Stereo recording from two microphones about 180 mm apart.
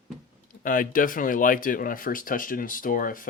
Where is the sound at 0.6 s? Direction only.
50° left (ahead or behind).